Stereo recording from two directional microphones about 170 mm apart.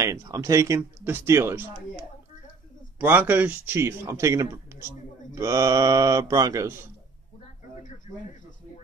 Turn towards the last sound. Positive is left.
turn(degrees=-15)  # may be behind; listen again after turning